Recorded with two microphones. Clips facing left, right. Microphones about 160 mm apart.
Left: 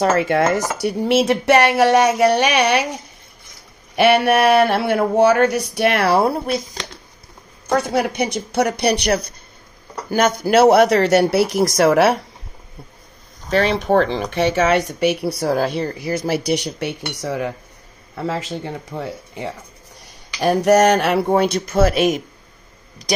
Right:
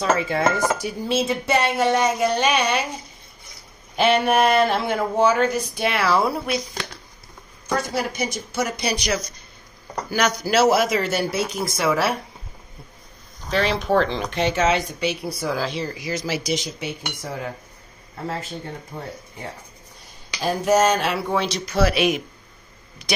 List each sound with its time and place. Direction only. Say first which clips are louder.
0.0 s speech: left 4 dB; 75° left (ahead or behind)
3.9 s speech: left 4 dB; 70° left (ahead or behind)
7.7 s speech: left 6 dB; 60° left (ahead or behind)
10.1 s speech: left 5 dB; 50° left (ahead or behind); by 12.2 s 70° left (ahead or behind)
13.5 s a man's voice: left 4 dB; 55° left (ahead or behind); by 23.1 s 40° left (ahead or behind)